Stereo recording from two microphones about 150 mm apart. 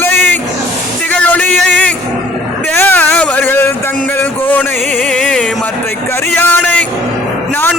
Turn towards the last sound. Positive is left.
turn(degrees=10)  # may be behind; listen again after turning